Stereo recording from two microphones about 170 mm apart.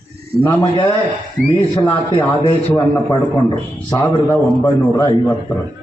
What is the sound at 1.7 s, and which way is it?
A man's voice, 15° left (ahead or behind).